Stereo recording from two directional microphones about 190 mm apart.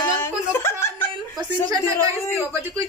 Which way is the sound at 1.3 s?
20° right (ahead or behind).